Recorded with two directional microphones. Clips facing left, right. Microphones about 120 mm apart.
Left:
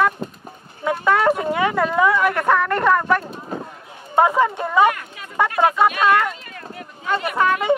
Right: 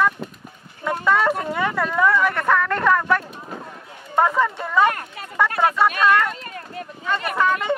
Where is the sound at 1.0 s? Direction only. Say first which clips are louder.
Left 2 dB; 20° left (ahead or behind).